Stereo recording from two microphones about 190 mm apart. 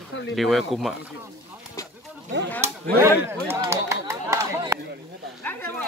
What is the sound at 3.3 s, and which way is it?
Speech, 10° right (ahead or behind).